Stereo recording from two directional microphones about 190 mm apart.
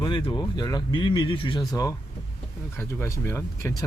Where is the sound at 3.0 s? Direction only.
15° left (ahead or behind).